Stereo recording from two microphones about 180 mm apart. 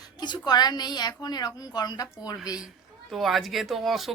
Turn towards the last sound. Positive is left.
turn(degrees=0)  # may be behind; listen again after turning